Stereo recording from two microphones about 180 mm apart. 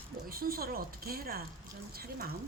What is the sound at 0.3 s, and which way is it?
A woman's voice, 55° right (ahead or behind).